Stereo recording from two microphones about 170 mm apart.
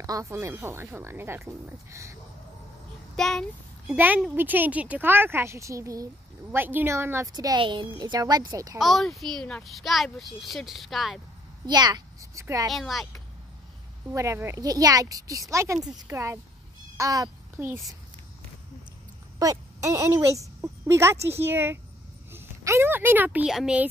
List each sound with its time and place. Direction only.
0.0 s speech: 20° right (ahead or behind)
3.2 s a child's voice: 5° left (ahead or behind)
3.8 s speech: 10° right (ahead or behind)
8.7 s a child's voice: centre (ahead or behind)
11.6 s a child's voice: 25° right (ahead or behind)
12.6 s a child's voice: centre (ahead or behind)
14.1 s a child's voice: 15° right (ahead or behind)
19.3 s a woman's voice: 20° right (ahead or behind)